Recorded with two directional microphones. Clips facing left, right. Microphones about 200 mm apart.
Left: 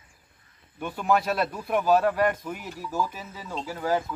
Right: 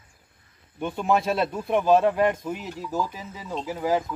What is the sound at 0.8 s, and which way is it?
Speech, 25° right (ahead or behind).